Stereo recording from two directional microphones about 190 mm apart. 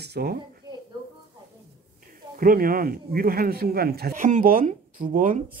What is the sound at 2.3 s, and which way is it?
A man's voice, 50° right (ahead or behind).